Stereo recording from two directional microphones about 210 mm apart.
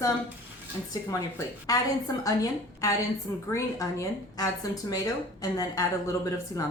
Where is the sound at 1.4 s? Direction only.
15° left (ahead or behind).